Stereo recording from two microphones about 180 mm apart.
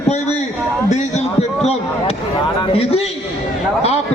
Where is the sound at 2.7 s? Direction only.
35° left (ahead or behind).